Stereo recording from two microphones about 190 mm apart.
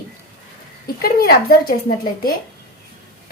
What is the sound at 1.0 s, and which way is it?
Speech, 50° left (ahead or behind).